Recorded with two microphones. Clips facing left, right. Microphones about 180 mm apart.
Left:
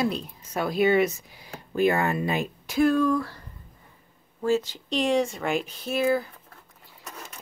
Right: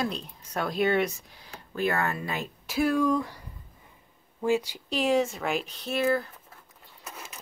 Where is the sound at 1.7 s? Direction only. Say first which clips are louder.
Left 5 dB; 15° left (ahead or behind).